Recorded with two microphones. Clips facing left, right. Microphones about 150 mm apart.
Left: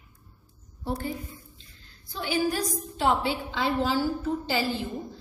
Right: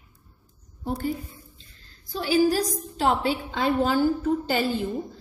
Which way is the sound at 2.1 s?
40° right (ahead or behind).